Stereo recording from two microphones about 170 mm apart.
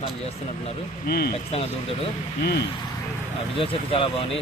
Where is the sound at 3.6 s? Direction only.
30° left (ahead or behind).